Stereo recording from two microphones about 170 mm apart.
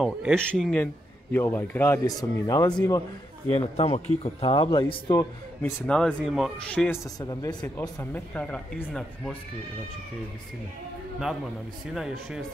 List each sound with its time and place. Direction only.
0.0 s speech: centre (ahead or behind); by 3.0 s 20° left (ahead or behind)
3.4 s speech: 35° left (ahead or behind)
5.6 s speech: 10° left (ahead or behind)
7.2 s speech: 20° left (ahead or behind); by 9.4 s 5° left (ahead or behind)
11.9 s speech: centre (ahead or behind)